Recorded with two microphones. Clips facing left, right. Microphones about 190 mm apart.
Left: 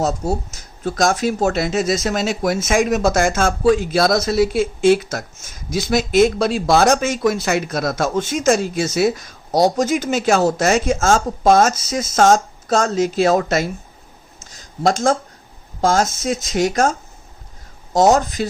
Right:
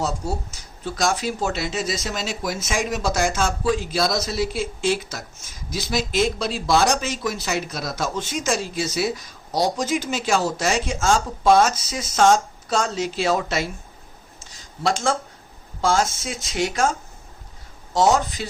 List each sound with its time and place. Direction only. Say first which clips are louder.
0.9 s speech: left 6 dB; 50° left (ahead or behind)
14.8 s speech: left 6 dB; 45° left (ahead or behind)
17.9 s speech: left 5 dB; 40° left (ahead or behind)